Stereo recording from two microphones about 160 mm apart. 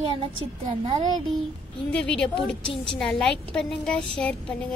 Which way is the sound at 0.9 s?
25° right (ahead or behind).